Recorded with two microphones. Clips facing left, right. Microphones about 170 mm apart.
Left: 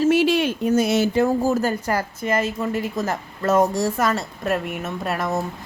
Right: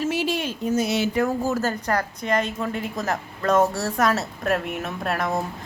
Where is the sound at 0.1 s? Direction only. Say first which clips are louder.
Left 7 dB; 70° left (ahead or behind); by 1.1 s 50° left (ahead or behind).